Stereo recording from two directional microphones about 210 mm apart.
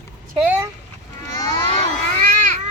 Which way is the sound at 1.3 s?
20° left (ahead or behind).